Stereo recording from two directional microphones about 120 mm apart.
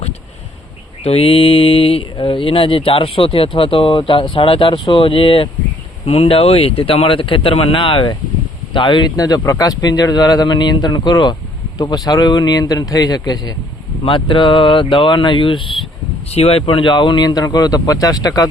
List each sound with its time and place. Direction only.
1.0 s speech: 55° left (ahead or behind)
16.3 s speech: 55° left (ahead or behind); by 18.4 s 30° left (ahead or behind)